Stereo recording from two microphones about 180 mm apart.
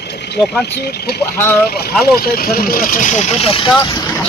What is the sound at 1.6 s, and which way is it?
Speech, 60° left (ahead or behind).